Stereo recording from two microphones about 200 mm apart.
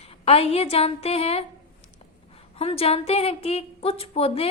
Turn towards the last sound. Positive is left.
turn(degrees=30)  # may be behind; listen again after turning